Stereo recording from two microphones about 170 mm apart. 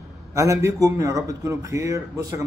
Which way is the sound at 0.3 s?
20° right (ahead or behind).